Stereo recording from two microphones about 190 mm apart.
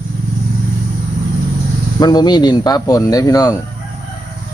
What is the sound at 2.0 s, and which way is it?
Speech, 20° left (ahead or behind).